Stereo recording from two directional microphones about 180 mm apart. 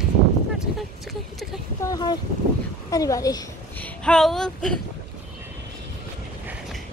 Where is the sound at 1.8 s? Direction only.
20° left (ahead or behind).